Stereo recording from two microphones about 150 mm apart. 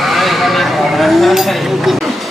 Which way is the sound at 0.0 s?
Centre (ahead or behind).